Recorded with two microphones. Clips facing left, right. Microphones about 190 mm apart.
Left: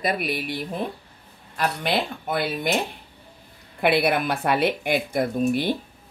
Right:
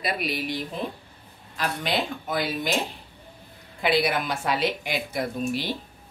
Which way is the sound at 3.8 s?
55° left (ahead or behind).